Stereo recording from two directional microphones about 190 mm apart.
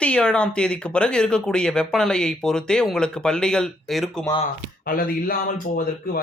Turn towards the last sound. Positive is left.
turn(degrees=50)  # may be behind; listen again after turning